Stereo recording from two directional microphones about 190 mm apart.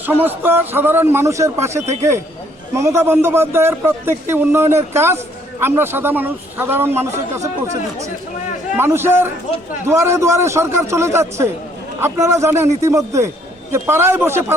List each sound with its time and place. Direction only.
0.0 s a man's voice: 10° right (ahead or behind)
8.8 s a man's voice: 10° right (ahead or behind)